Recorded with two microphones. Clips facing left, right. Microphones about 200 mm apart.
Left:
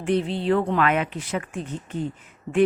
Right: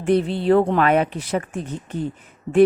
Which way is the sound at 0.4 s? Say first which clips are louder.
Right 6 dB; 40° right (ahead or behind).